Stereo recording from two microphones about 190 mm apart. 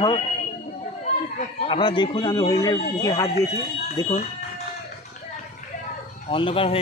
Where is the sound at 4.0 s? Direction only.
20° left (ahead or behind).